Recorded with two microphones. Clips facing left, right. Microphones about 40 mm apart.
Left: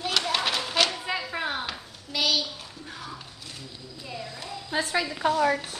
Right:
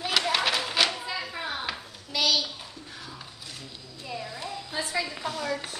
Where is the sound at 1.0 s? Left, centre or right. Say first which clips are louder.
Left 4 dB; left.